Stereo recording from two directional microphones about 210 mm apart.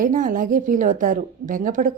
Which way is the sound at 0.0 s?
40° right (ahead or behind).